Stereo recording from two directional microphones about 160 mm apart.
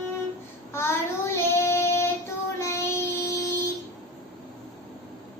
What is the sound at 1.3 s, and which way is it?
Child singing, 15° left (ahead or behind).